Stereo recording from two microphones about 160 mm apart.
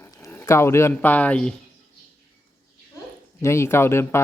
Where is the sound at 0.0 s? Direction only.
20° left (ahead or behind).